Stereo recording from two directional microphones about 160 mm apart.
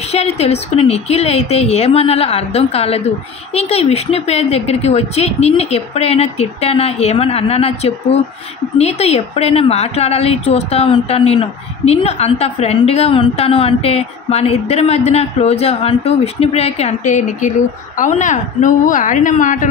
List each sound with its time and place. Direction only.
0.1 s a woman's voice: 40° left (ahead or behind)